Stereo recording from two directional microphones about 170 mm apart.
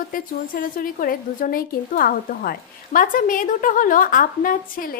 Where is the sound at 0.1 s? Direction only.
55° left (ahead or behind).